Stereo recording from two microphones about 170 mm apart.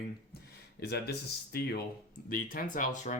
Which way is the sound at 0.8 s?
70° left (ahead or behind).